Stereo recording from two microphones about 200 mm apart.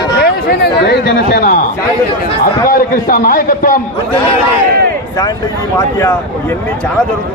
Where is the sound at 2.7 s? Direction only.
45° left (ahead or behind).